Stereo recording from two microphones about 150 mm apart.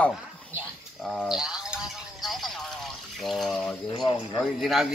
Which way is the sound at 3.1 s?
Centre (ahead or behind).